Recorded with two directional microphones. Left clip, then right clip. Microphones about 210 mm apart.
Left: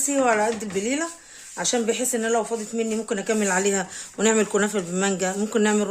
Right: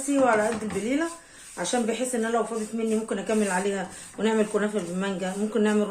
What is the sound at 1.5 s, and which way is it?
Speech, 50° left (ahead or behind).